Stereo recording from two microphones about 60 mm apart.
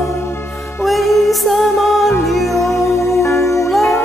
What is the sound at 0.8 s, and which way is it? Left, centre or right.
Music, centre.